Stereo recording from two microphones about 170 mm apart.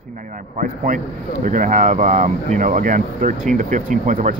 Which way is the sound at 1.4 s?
45° right (ahead or behind).